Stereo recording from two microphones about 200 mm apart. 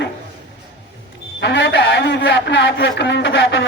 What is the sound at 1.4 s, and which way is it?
Speech, 60° left (ahead or behind).